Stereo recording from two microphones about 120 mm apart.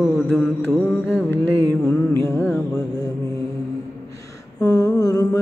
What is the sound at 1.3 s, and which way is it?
Mantra, 20° left (ahead or behind).